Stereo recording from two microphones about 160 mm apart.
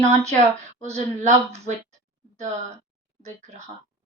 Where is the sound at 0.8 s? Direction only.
45° right (ahead or behind).